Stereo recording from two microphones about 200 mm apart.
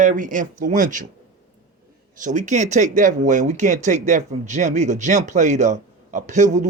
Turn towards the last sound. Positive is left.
turn(degrees=-35)  # may be behind; listen again after turning